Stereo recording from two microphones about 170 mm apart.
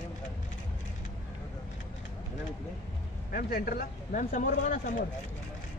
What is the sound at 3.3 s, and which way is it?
Speech, 60° left (ahead or behind).